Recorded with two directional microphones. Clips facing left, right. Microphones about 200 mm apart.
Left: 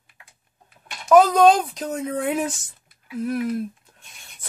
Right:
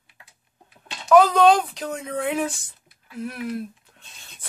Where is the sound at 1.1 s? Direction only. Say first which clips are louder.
Left 1 dB; 45° left (ahead or behind).